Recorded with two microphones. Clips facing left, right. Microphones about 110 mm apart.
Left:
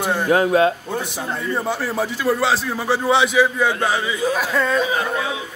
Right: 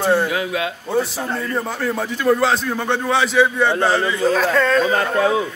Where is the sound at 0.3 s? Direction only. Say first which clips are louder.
Left 7 dB; 40° left (ahead or behind).